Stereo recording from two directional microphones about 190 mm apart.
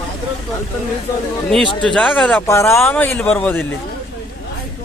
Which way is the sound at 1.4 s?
5° left (ahead or behind).